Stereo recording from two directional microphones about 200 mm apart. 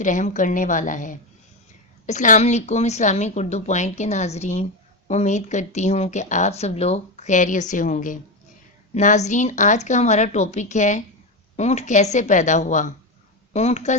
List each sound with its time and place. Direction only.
0.0 s speech: 40° left (ahead or behind)